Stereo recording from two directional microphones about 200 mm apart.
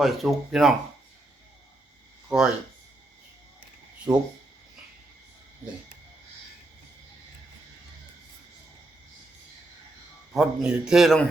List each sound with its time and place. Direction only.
0.0 s a man's voice: centre (ahead or behind)
2.3 s a man's voice: 5° right (ahead or behind)
4.1 s a man's voice: 5° right (ahead or behind)
10.3 s a man's voice: 5° right (ahead or behind)